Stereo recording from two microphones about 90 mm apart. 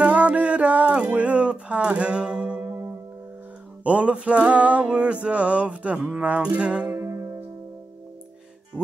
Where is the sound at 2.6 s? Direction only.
30° right (ahead or behind).